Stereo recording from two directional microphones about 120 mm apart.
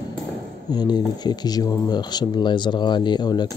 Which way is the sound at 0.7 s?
35° left (ahead or behind).